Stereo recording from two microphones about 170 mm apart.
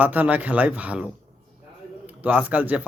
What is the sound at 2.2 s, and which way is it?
Speech, 10° right (ahead or behind).